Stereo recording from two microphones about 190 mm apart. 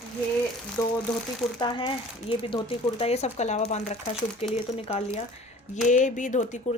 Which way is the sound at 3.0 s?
35° left (ahead or behind).